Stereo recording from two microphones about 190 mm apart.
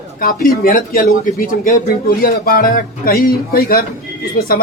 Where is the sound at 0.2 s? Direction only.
50° left (ahead or behind).